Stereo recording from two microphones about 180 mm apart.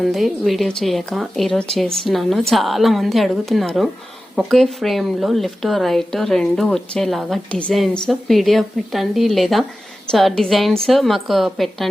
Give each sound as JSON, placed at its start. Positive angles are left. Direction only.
{"t": 0.0, "sound": "a woman's voice", "side_deg": 0}